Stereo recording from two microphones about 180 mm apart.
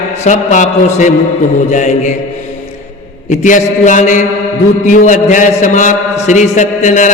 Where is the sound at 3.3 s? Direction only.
45° left (ahead or behind).